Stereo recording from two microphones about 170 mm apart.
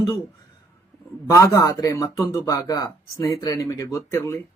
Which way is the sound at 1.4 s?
20° left (ahead or behind).